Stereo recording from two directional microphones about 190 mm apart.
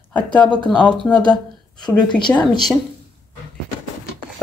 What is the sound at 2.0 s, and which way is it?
Speech, 25° left (ahead or behind).